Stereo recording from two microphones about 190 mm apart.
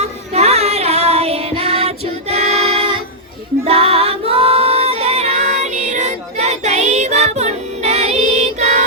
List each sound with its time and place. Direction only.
0.0 s child singing: 35° right (ahead or behind)
2.3 s singing: 35° right (ahead or behind)
3.6 s music: 30° right (ahead or behind)